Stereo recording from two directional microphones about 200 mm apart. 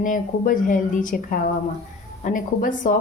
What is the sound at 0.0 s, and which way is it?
A woman's voice, 40° left (ahead or behind).